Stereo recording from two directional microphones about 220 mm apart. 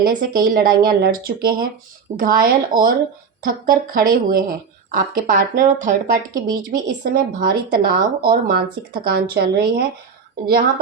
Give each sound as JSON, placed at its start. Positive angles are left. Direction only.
{"t": 0.2, "sound": "a woman's voice", "side_deg": -40}